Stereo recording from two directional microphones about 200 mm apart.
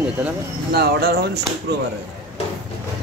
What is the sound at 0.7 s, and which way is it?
Speech, 50° right (ahead or behind).